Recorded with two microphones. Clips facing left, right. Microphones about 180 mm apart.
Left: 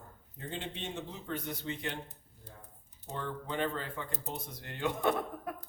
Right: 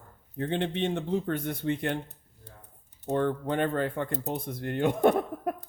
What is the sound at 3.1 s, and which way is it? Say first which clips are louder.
Speech: right 12 dB; 60° right (ahead or behind).